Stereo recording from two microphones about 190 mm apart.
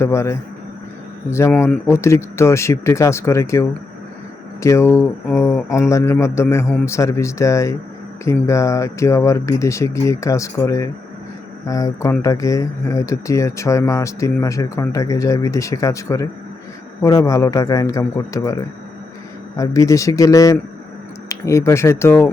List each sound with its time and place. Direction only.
0.0 s speech: 15° left (ahead or behind)
19.5 s speech: 15° left (ahead or behind)